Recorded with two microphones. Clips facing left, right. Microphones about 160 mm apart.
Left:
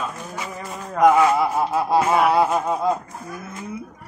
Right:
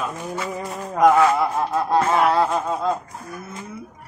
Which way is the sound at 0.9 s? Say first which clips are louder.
Even; centre (ahead or behind).